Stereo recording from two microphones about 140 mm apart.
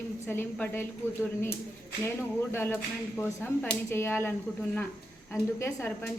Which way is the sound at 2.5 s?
15° left (ahead or behind).